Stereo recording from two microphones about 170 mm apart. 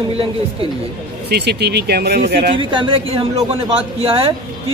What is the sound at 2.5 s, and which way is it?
A man's voice, 30° right (ahead or behind).